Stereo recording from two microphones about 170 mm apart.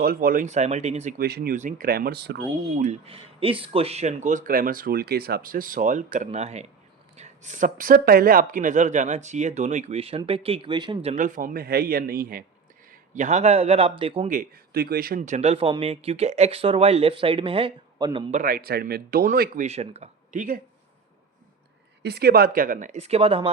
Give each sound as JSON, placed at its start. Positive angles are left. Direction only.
{"t": 0.0, "sound": "speech", "side_deg": -60}
{"t": 1.2, "sound": "a man's voice", "side_deg": -65}
{"t": 1.5, "sound": "speech", "side_deg": -45}
{"t": 1.9, "sound": "speech", "side_deg": -65}
{"t": 2.8, "sound": "speech", "side_deg": -35}
{"t": 11.1, "sound": "a man's voice", "side_deg": -50}
{"t": 12.9, "sound": "a man's voice", "side_deg": -45}
{"t": 14.3, "sound": "speech", "side_deg": -55}
{"t": 18.3, "sound": "speech", "side_deg": -50}
{"t": 22.0, "sound": "speech", "side_deg": -65}